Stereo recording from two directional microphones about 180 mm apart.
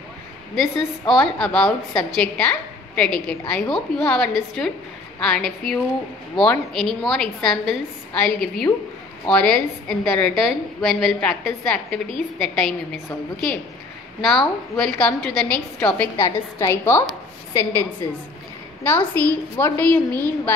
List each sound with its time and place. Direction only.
0.6 s a woman's voice: centre (ahead or behind); by 17.7 s 15° left (ahead or behind)
18.9 s a woman's voice: 10° left (ahead or behind)